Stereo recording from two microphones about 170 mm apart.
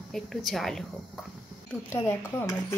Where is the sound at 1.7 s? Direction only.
15° left (ahead or behind).